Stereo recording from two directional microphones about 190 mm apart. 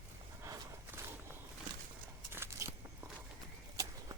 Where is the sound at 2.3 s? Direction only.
10° right (ahead or behind).